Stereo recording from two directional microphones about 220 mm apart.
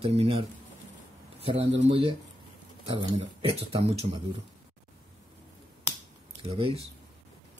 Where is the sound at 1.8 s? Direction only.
25° right (ahead or behind).